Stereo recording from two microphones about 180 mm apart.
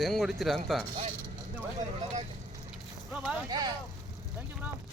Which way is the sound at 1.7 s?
40° right (ahead or behind).